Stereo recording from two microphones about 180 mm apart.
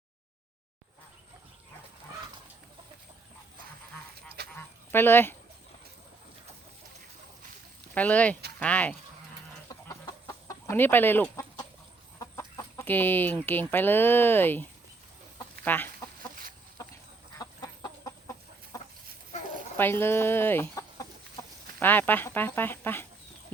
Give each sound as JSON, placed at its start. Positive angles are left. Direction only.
{"t": 4.5, "sound": "honk", "side_deg": 10}
{"t": 7.9, "sound": "speech", "side_deg": 10}
{"t": 10.2, "sound": "speech", "side_deg": 15}
{"t": 15.6, "sound": "chicken", "side_deg": 10}
{"t": 16.3, "sound": "chicken", "side_deg": -50}
{"t": 17.4, "sound": "chicken", "side_deg": 20}
{"t": 19.7, "sound": "speech", "side_deg": 10}